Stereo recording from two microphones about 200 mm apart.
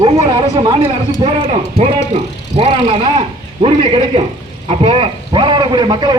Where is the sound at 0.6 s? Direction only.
25° right (ahead or behind).